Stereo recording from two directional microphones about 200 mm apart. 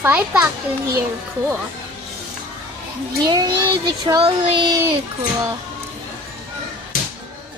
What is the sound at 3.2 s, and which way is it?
Child singing, 20° right (ahead or behind).